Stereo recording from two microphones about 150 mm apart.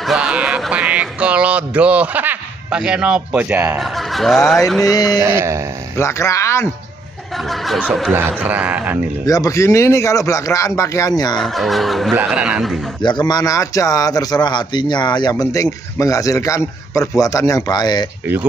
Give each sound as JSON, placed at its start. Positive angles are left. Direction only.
{"t": 0.0, "sound": "a sound", "side_deg": -5}
{"t": 3.8, "sound": "speech", "side_deg": 0}
{"t": 4.8, "sound": "speech", "side_deg": 25}
{"t": 5.2, "sound": "speech", "side_deg": -15}
{"t": 5.9, "sound": "speech", "side_deg": 20}
{"t": 7.4, "sound": "speech", "side_deg": 0}
{"t": 9.2, "sound": "speech", "side_deg": 25}
{"t": 11.3, "sound": "speech", "side_deg": 0}
{"t": 13.0, "sound": "speech", "side_deg": 30}